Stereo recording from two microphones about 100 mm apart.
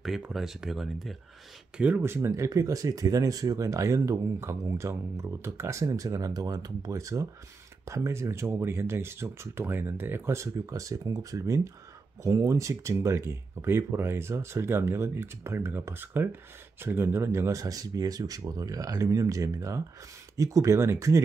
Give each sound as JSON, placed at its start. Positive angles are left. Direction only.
{"t": 0.3, "sound": "speech", "side_deg": -5}
{"t": 1.8, "sound": "speech", "side_deg": -20}